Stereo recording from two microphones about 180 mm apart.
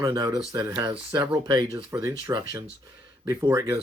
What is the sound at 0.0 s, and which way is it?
Speech, 20° right (ahead or behind).